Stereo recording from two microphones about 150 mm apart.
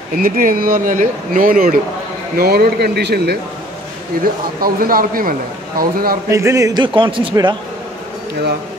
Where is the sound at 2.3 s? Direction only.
90° right.